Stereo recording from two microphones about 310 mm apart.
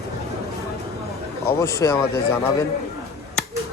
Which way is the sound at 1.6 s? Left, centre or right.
Centre.